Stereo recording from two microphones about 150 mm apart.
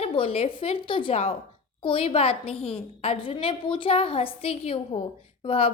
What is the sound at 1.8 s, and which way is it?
A woman's voice, 35° left (ahead or behind).